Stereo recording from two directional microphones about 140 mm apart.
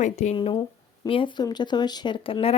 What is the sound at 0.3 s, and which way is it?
Speech, 35° left (ahead or behind).